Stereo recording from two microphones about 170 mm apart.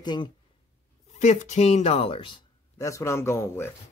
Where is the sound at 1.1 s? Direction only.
45° left (ahead or behind).